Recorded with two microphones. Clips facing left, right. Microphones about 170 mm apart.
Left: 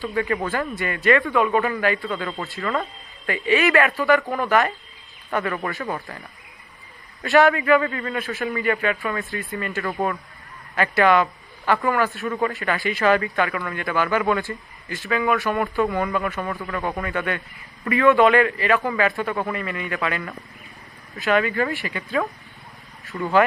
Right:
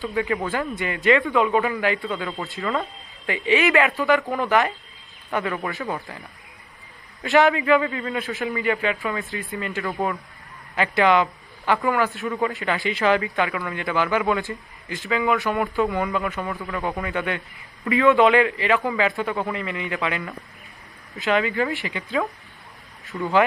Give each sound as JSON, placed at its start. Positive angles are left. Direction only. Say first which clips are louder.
{"t": 0.0, "sound": "speech", "louder": "even", "side_deg": -15}
{"t": 7.2, "sound": "a man's voice", "louder": "left 1 dB", "side_deg": -20}
{"t": 16.5, "sound": "speech", "louder": "left 1 dB", "side_deg": 0}
{"t": 17.0, "sound": "speech", "louder": "even", "side_deg": -15}
{"t": 23.1, "sound": "speech", "louder": "even", "side_deg": 0}